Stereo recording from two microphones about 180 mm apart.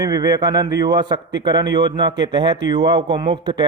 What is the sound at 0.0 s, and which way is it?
Speech, 20° right (ahead or behind).